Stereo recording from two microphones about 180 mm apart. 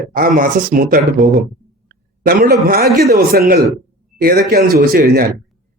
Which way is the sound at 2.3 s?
55° right (ahead or behind).